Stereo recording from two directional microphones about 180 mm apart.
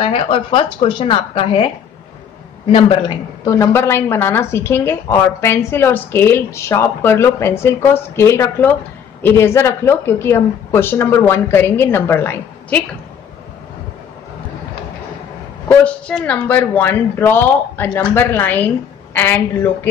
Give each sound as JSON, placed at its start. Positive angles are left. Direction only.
{"t": 0.0, "sound": "a woman's voice", "side_deg": 30}
{"t": 2.7, "sound": "a woman's voice", "side_deg": 25}
{"t": 15.7, "sound": "a woman's voice", "side_deg": 5}